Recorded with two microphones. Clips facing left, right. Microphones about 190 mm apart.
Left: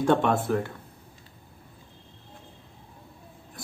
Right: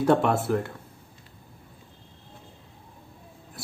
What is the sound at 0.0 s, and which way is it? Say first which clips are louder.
Speech: right 1 dB; 5° right (ahead or behind).